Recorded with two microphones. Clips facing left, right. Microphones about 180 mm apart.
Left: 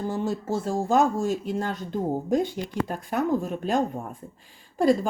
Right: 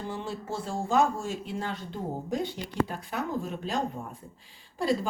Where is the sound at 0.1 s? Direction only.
45° left (ahead or behind).